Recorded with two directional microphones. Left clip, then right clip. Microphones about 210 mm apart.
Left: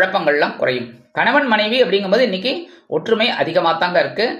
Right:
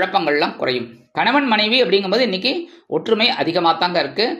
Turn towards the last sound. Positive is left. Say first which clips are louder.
# left 2 dB
turn(degrees=-30)  # may be behind; listen again after turning